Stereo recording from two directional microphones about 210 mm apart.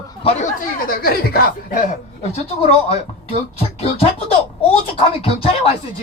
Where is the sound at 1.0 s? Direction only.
45° left (ahead or behind); by 5.6 s 25° left (ahead or behind).